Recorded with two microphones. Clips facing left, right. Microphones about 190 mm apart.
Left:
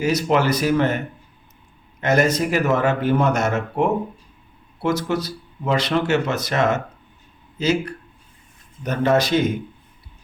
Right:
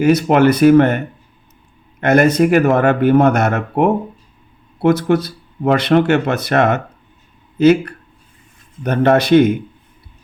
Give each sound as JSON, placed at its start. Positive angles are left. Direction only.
{"t": 0.0, "sound": "speech", "side_deg": -55}